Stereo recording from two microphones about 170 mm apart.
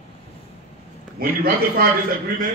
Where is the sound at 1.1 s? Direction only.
60° right (ahead or behind).